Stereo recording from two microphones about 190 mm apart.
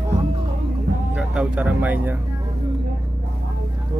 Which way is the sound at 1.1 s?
5° right (ahead or behind).